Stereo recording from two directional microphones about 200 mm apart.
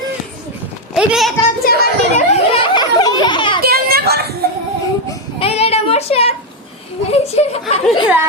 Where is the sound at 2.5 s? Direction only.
25° left (ahead or behind).